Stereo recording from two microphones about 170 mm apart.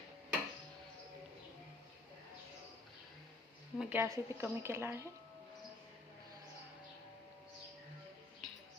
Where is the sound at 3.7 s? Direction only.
10° right (ahead or behind).